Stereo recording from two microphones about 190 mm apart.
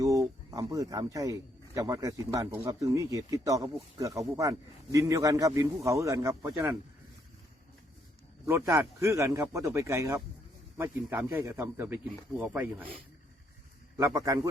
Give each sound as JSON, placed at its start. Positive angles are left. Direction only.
{"t": 0.0, "sound": "speech", "side_deg": -15}
{"t": 8.4, "sound": "speech", "side_deg": -15}
{"t": 13.9, "sound": "speech", "side_deg": -15}